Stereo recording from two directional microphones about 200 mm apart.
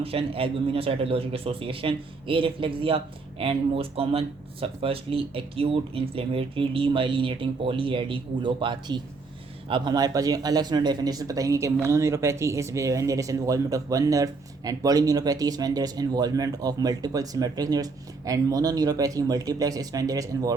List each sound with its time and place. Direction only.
0.0 s speech: 30° right (ahead or behind)